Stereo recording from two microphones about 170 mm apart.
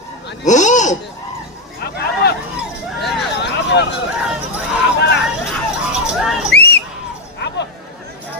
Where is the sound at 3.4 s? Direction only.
90° left.